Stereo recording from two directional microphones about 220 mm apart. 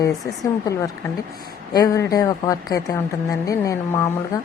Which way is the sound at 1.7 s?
15° left (ahead or behind).